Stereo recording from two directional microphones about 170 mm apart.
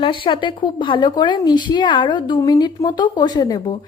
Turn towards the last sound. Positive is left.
turn(degrees=25)  # may be behind; listen again after turning